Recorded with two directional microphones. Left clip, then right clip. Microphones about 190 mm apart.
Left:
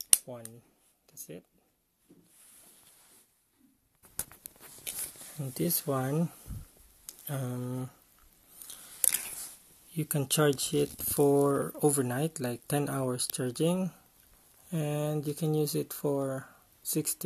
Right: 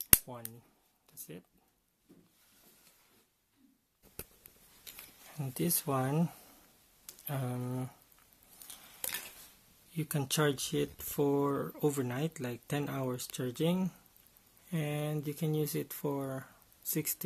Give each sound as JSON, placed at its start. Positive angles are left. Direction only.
{"t": 5.4, "sound": "speech", "side_deg": 5}
{"t": 9.9, "sound": "speech", "side_deg": 15}